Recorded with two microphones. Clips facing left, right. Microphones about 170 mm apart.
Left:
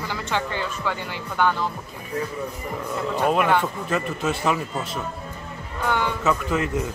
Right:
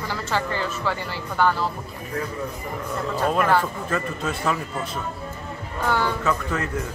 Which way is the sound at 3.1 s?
15° left (ahead or behind).